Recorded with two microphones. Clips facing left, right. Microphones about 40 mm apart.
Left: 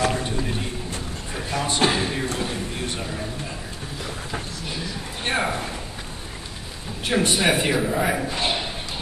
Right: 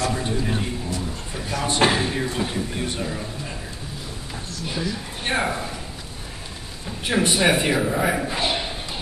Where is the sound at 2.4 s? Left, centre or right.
Centre.